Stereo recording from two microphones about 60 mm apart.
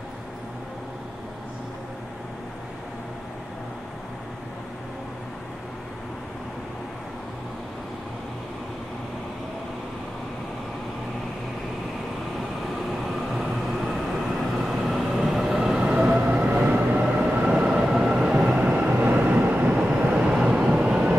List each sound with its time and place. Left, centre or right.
13.0 s vehicle: centre; by 17.3 s right
17.3 s train: centre
20.0 s vehicle: centre